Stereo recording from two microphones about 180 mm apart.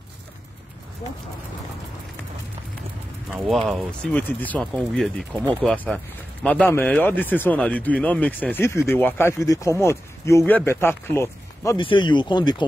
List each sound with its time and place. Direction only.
3.3 s speech: centre (ahead or behind)
5.3 s speech: 10° right (ahead or behind)
5.6 s speech: 5° left (ahead or behind)
11.8 s speech: 25° left (ahead or behind)